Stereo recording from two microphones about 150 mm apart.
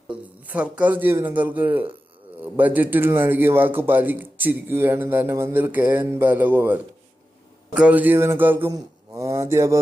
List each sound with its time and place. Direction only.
0.1 s a man's voice: 10° right (ahead or behind)